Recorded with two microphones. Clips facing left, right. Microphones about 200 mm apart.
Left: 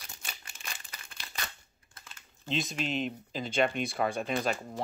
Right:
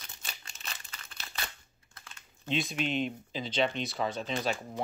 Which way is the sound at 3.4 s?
50° left (ahead or behind).